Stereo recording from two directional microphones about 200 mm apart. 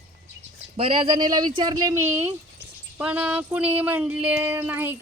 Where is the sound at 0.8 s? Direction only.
25° right (ahead or behind); by 2.3 s 10° right (ahead or behind).